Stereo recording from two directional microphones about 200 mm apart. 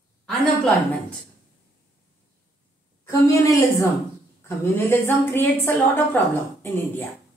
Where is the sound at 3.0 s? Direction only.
15° left (ahead or behind).